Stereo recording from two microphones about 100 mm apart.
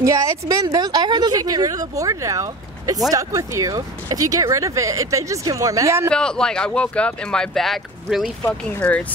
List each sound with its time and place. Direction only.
0.0 s a woman's voice: 35° right (ahead or behind)
6.0 s speech: 10° left (ahead or behind)